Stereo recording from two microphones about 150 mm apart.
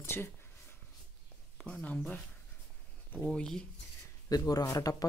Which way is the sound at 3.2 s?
5° left (ahead or behind).